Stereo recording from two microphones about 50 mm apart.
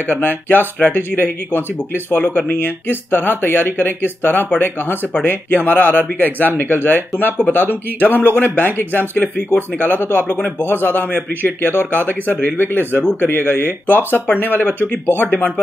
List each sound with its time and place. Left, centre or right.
0.0 s speech: left